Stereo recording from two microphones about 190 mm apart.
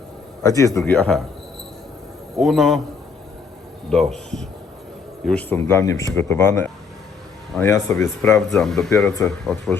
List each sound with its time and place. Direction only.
0.4 s a man's voice: 15° left (ahead or behind)
2.3 s speech: centre (ahead or behind)
3.8 s a man's voice: centre (ahead or behind)
7.5 s speech: centre (ahead or behind)
7.9 s a man's voice: 15° left (ahead or behind)
8.4 s speech: centre (ahead or behind)
9.0 s a man's voice: 15° left (ahead or behind)